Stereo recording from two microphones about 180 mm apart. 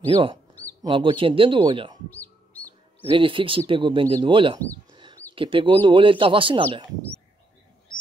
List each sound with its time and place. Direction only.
0.1 s speech: 30° right (ahead or behind)
2.0 s bird: 10° left (ahead or behind)
3.1 s speech: 30° right (ahead or behind)